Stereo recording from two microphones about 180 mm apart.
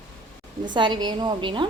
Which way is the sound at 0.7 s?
25° right (ahead or behind).